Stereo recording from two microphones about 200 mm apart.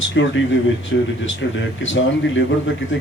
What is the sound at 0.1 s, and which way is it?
Speech, 65° left (ahead or behind).